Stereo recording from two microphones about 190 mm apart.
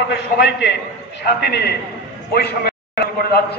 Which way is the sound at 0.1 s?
65° left (ahead or behind).